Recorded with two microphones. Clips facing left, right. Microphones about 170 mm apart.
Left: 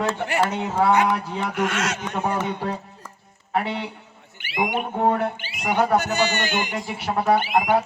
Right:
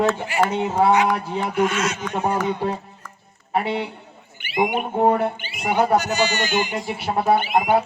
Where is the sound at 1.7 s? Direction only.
80° left.